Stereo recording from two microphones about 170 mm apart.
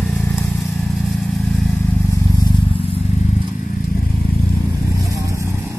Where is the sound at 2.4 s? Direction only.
30° left (ahead or behind).